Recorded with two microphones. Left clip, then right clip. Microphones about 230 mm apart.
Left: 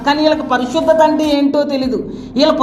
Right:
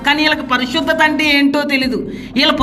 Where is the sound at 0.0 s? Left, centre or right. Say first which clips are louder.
Left 1 dB; right.